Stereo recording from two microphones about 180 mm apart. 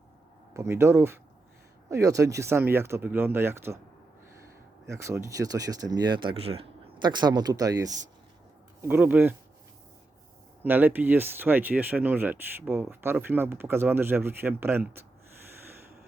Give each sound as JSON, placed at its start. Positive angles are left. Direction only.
{"t": 0.5, "sound": "speech", "side_deg": -15}
{"t": 4.9, "sound": "speech", "side_deg": -15}
{"t": 10.6, "sound": "speech", "side_deg": -10}